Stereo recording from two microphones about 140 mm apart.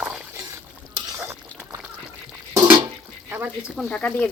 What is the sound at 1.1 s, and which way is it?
Stir, 20° right (ahead or behind).